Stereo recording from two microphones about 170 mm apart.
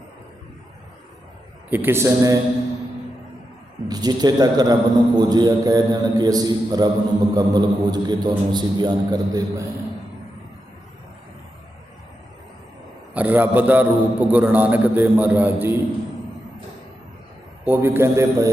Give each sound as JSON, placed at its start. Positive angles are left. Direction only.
{"t": 1.7, "sound": "a man's voice", "side_deg": -15}
{"t": 3.8, "sound": "a man's voice", "side_deg": -25}
{"t": 13.1, "sound": "a man's voice", "side_deg": -10}
{"t": 17.7, "sound": "a man's voice", "side_deg": -15}